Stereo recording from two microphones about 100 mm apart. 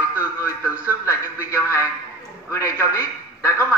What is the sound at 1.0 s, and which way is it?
A man's voice, 30° left (ahead or behind).